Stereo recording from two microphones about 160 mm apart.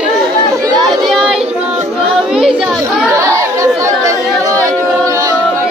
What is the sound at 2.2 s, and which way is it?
Children playing, 5° right (ahead or behind).